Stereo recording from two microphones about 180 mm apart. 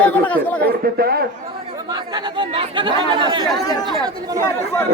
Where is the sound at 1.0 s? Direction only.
60° right (ahead or behind).